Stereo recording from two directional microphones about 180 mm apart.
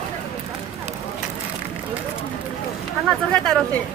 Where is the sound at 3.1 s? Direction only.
Centre (ahead or behind).